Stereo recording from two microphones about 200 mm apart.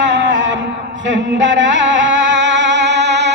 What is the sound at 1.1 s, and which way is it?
Music, 65° right (ahead or behind).